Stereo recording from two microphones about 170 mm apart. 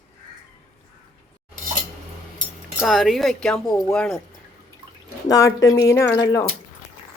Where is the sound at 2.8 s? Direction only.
Centre (ahead or behind).